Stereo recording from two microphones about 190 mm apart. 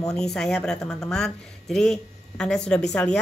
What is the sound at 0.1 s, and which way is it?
A woman's voice, 5° left (ahead or behind).